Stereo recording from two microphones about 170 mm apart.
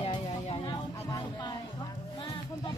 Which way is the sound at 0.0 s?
30° left (ahead or behind).